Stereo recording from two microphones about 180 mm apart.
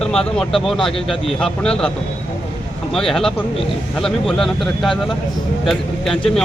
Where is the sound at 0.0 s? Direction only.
5° left (ahead or behind).